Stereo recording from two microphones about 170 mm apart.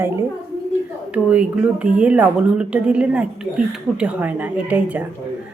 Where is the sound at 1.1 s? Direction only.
5° right (ahead or behind).